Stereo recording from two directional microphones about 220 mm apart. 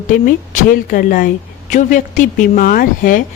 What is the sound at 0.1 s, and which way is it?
A woman's voice, 40° left (ahead or behind).